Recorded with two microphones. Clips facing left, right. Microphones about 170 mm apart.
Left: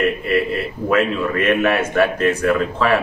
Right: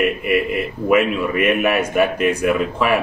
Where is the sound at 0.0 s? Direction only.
15° right (ahead or behind).